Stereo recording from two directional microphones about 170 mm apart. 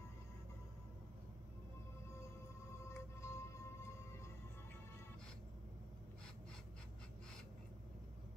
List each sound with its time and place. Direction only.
3.2 s music: 15° left (ahead or behind)